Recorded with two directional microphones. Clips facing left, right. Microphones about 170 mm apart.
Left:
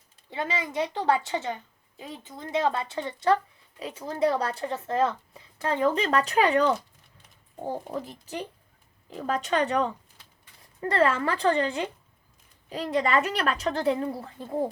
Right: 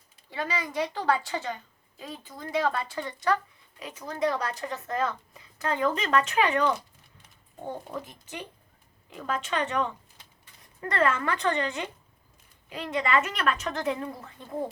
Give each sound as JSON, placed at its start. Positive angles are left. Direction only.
{"t": 0.3, "sound": "a woman's voice", "side_deg": 25}